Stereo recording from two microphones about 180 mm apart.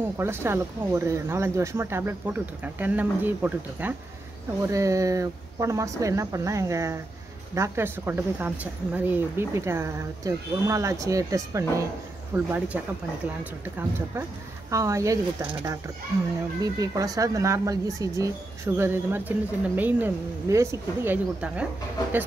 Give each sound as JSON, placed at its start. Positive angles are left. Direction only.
{"t": 0.0, "sound": "speech", "side_deg": -15}